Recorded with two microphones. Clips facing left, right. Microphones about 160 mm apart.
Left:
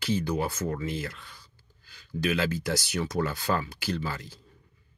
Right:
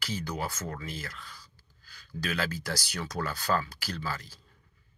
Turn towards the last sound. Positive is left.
turn(degrees=20)  # may be behind; listen again after turning